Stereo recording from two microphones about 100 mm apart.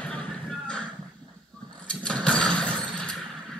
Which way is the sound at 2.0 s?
10° left (ahead or behind).